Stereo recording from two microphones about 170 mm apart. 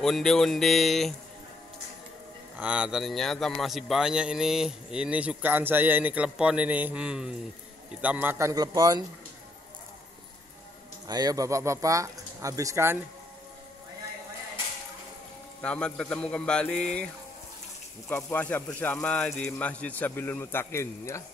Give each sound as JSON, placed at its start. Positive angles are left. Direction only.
{"t": 0.0, "sound": "a man's voice", "side_deg": 0}
{"t": 2.5, "sound": "a man's voice", "side_deg": -5}
{"t": 11.1, "sound": "speech", "side_deg": -20}
{"t": 15.6, "sound": "a man's voice", "side_deg": 5}